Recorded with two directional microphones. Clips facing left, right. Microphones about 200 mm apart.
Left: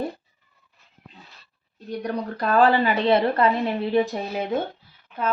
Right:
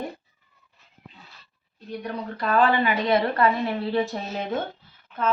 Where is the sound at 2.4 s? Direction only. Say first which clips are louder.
Left 2 dB; 40° left (ahead or behind).